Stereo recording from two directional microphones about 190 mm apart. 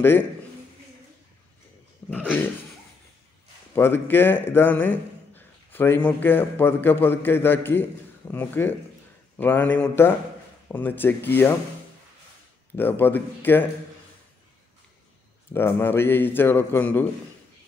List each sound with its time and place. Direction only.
2.0 s dog: 5° left (ahead or behind)
3.7 s a man's voice: 10° left (ahead or behind)
12.7 s a man's voice: 10° left (ahead or behind)
15.5 s a man's voice: 10° left (ahead or behind)